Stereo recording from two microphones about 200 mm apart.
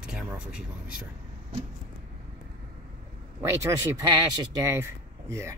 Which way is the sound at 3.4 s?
15° right (ahead or behind).